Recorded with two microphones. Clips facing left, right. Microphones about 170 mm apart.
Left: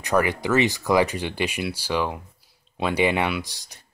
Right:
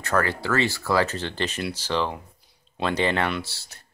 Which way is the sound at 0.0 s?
15° left (ahead or behind).